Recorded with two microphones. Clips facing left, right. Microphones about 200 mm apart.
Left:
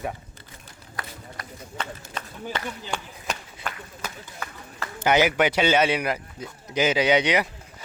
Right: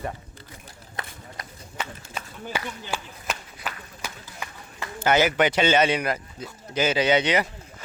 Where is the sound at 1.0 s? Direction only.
25° right (ahead or behind).